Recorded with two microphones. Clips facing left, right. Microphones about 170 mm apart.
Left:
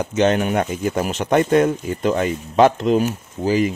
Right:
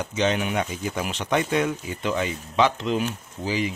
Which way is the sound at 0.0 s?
50° left (ahead or behind).